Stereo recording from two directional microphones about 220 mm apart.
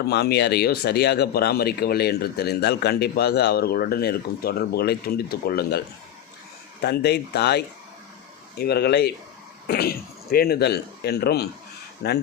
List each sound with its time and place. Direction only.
0.1 s speech: 50° left (ahead or behind)
6.8 s speech: 50° left (ahead or behind)